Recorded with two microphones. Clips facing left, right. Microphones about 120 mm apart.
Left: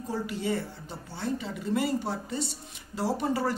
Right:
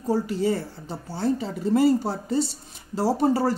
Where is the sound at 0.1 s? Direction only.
35° right (ahead or behind).